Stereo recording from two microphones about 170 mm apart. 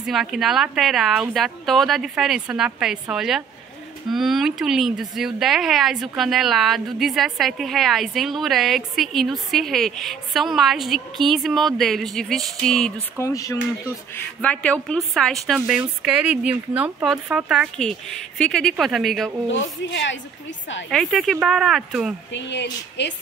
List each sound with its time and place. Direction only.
0.0 s speech: centre (ahead or behind)
13.2 s speech: 20° left (ahead or behind)
14.1 s speech: 10° left (ahead or behind)
19.9 s a woman's voice: 90° left
20.9 s speech: centre (ahead or behind)
22.3 s a woman's voice: 90° left